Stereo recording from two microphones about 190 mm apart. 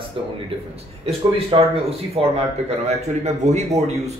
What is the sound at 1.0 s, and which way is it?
Speech, 30° right (ahead or behind).